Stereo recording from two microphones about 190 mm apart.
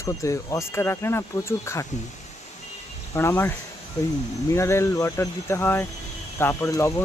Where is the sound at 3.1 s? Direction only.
15° left (ahead or behind).